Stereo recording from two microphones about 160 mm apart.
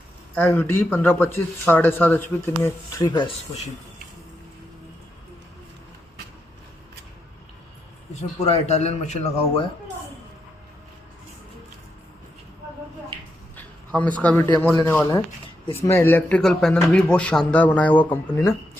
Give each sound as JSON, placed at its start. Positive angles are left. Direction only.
{"t": 0.3, "sound": "speech", "side_deg": 10}
{"t": 3.0, "sound": "speech", "side_deg": 25}
{"t": 8.4, "sound": "a man's voice", "side_deg": 40}
{"t": 13.9, "sound": "speech", "side_deg": 10}